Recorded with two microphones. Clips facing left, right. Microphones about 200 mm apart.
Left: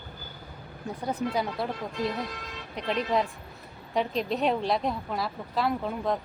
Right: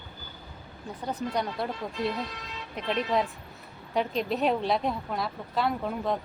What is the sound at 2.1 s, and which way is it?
Speech, 55° left (ahead or behind).